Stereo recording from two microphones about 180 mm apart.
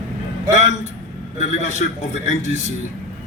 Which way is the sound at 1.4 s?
40° left (ahead or behind).